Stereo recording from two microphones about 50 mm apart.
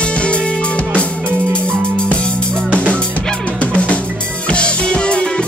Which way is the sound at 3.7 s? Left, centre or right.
Left.